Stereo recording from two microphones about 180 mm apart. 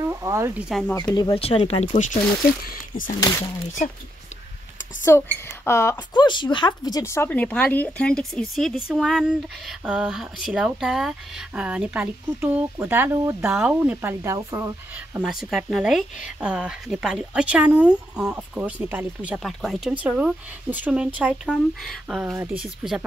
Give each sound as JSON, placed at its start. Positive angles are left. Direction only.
{"t": 0.0, "sound": "speech", "side_deg": -15}
{"t": 0.7, "sound": "speech", "side_deg": 0}
{"t": 1.1, "sound": "speech", "side_deg": 30}
{"t": 3.2, "sound": "speech", "side_deg": 20}
{"t": 5.1, "sound": "a woman's voice", "side_deg": 15}
{"t": 15.1, "sound": "speech", "side_deg": 0}
{"t": 22.3, "sound": "speech", "side_deg": -15}
{"t": 22.6, "sound": "speech", "side_deg": -5}